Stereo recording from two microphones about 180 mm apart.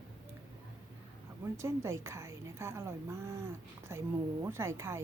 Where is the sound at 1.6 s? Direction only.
15° right (ahead or behind).